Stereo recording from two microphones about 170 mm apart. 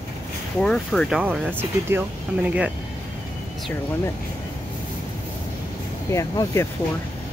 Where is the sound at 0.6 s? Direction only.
5° left (ahead or behind).